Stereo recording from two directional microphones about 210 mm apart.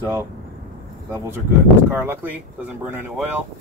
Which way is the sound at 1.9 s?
10° right (ahead or behind).